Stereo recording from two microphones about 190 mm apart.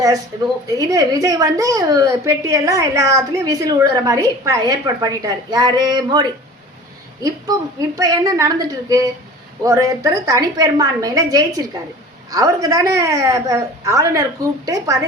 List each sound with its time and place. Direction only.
0.8 s a woman's voice: 20° right (ahead or behind)